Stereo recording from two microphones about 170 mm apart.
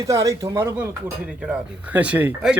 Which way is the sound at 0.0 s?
20° right (ahead or behind).